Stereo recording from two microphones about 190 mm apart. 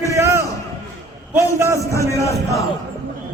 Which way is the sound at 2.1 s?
15° left (ahead or behind).